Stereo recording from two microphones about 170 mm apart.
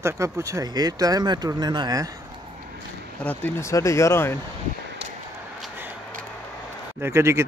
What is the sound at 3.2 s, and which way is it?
Speech, 10° left (ahead or behind).